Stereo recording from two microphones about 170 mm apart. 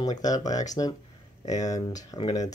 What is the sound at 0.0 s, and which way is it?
Speech, 20° left (ahead or behind).